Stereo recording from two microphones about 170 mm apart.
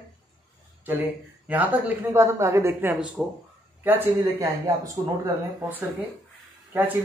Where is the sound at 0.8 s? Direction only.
10° right (ahead or behind).